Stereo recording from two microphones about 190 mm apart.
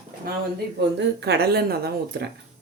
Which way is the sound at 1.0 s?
60° right (ahead or behind).